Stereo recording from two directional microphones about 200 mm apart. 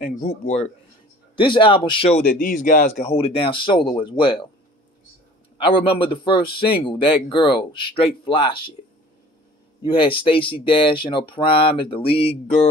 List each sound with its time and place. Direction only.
0.1 s speech: 35° left (ahead or behind)
1.3 s speech: 25° left (ahead or behind)
2.2 s speech: 45° left (ahead or behind); by 4.5 s 25° left (ahead or behind)
5.6 s speech: 25° left (ahead or behind)
9.8 s speech: 25° left (ahead or behind)